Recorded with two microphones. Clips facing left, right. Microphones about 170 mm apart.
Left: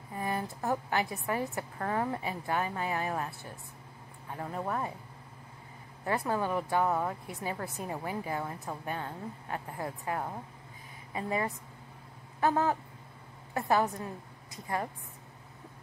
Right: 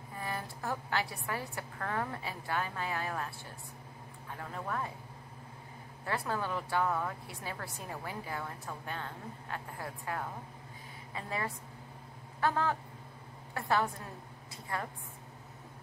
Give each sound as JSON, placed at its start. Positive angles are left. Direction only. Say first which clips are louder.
{"t": 0.2, "sound": "a woman's voice", "louder": "left 5 dB", "side_deg": 20}
{"t": 4.4, "sound": "a woman's voice", "louder": "left 4 dB", "side_deg": 25}
{"t": 6.0, "sound": "a woman's voice", "louder": "left 5 dB", "side_deg": 20}